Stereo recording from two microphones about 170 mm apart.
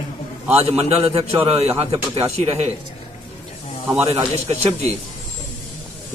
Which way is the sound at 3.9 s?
15° right (ahead or behind).